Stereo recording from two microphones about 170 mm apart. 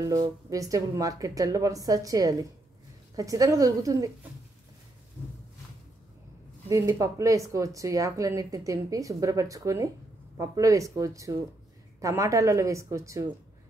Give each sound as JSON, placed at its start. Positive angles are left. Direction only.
{"t": 0.0, "sound": "speech", "side_deg": -20}
{"t": 6.7, "sound": "a woman's voice", "side_deg": -20}